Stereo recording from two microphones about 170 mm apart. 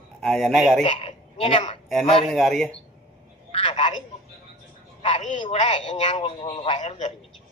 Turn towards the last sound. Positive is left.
turn(degrees=40)  # may be behind; listen again after turning